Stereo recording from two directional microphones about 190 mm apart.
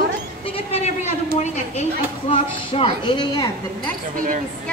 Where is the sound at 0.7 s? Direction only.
35° left (ahead or behind).